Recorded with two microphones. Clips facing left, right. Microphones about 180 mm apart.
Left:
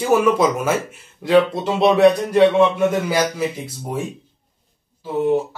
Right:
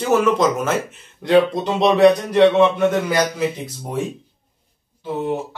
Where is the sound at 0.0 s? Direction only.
10° left (ahead or behind).